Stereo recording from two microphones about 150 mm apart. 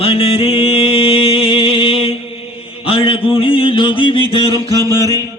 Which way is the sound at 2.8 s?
40° left (ahead or behind).